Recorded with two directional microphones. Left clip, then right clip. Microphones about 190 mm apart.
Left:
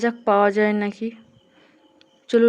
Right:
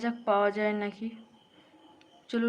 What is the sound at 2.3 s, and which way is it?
Speech, 35° left (ahead or behind).